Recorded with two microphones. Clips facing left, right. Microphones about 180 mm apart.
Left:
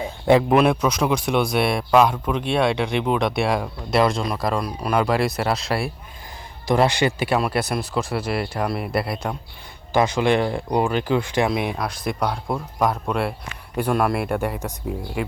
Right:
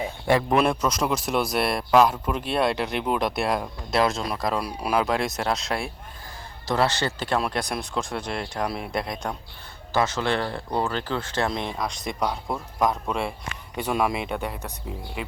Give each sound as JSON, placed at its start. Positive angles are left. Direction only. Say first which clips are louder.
{"t": 0.3, "sound": "speech", "louder": "left 6 dB", "side_deg": 15}
{"t": 0.5, "sound": "speech", "louder": "left 4 dB", "side_deg": 0}
{"t": 6.7, "sound": "speech", "louder": "left 5 dB", "side_deg": 15}